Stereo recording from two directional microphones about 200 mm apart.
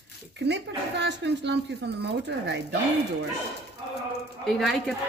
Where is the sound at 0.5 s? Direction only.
60° right (ahead or behind).